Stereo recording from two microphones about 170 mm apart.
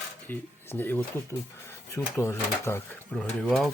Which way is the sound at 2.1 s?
15° left (ahead or behind).